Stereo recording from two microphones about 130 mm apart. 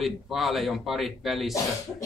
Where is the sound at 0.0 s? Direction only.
Centre (ahead or behind).